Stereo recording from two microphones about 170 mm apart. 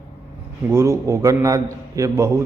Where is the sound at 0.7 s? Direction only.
15° right (ahead or behind).